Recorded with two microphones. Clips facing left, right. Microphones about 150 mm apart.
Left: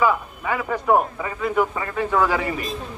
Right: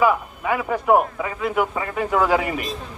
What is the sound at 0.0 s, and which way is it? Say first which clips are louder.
Speech: right 2 dB; 10° right (ahead or behind).